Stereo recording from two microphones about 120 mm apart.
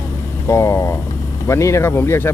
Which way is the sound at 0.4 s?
25° left (ahead or behind).